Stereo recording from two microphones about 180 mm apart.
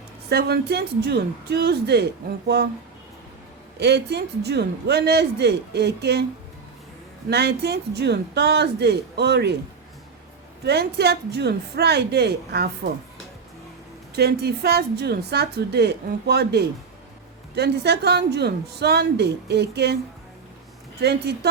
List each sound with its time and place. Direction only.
0.3 s a woman's voice: 60° right (ahead or behind)
3.8 s a woman's voice: 65° right (ahead or behind)
7.3 s a woman's voice: 65° right (ahead or behind)
10.7 s a woman's voice: 65° right (ahead or behind)
14.2 s a woman's voice: 65° right (ahead or behind)
21.0 s a woman's voice: 65° right (ahead or behind)